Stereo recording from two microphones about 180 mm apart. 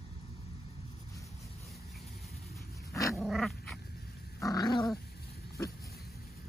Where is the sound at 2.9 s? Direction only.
15° left (ahead or behind).